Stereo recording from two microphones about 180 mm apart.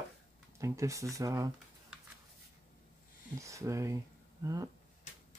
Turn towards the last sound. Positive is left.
turn(degrees=-20)  # may be behind; listen again after turning